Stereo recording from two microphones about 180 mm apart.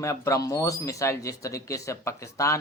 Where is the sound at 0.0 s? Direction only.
15° left (ahead or behind).